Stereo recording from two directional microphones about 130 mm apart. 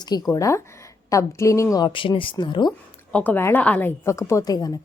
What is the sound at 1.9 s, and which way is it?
Speech, 40° left (ahead or behind).